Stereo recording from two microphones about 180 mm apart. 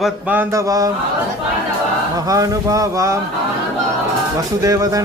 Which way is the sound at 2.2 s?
20° right (ahead or behind).